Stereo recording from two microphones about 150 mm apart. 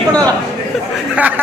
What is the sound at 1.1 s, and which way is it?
Speech, 10° right (ahead or behind).